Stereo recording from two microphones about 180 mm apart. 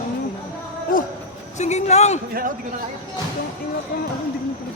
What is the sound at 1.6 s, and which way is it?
Speech, 40° left (ahead or behind).